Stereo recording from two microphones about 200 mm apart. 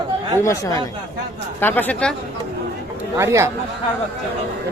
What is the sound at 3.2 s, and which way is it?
Speech, 15° right (ahead or behind).